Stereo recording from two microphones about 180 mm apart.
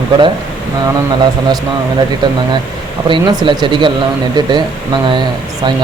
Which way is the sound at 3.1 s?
25° right (ahead or behind).